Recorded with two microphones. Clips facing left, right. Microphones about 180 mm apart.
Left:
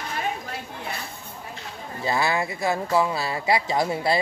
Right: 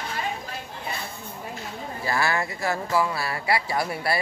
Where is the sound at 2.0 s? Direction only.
20° left (ahead or behind).